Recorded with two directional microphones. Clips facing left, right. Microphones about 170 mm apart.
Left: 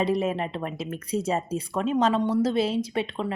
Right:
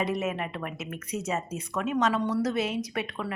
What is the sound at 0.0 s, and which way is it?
Speech, 30° left (ahead or behind).